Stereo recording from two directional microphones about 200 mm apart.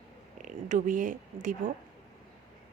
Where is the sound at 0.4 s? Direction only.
40° right (ahead or behind).